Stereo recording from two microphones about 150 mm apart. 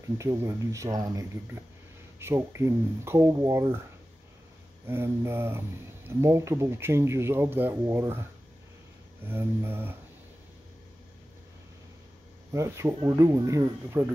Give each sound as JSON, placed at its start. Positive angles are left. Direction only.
{"t": 0.2, "sound": "speech", "side_deg": -20}
{"t": 4.8, "sound": "speech", "side_deg": -15}
{"t": 9.3, "sound": "speech", "side_deg": -15}
{"t": 12.5, "sound": "speech", "side_deg": -20}